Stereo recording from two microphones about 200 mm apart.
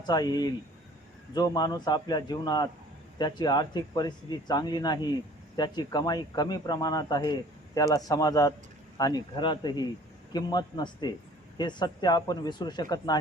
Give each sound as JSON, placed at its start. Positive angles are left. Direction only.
{"t": 0.0, "sound": "a man's voice", "side_deg": 20}